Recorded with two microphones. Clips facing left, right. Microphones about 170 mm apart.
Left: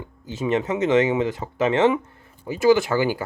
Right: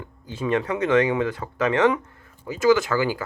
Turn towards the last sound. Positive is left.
turn(degrees=20)  # may be behind; listen again after turning